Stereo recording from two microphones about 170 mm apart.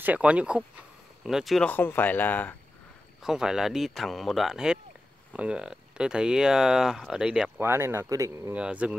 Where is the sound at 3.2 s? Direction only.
5° right (ahead or behind).